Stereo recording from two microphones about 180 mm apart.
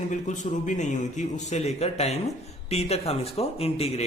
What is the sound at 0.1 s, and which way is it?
A man's voice, 40° left (ahead or behind).